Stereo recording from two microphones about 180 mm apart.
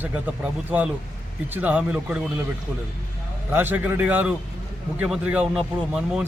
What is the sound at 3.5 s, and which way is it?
A man's voice, 10° right (ahead or behind).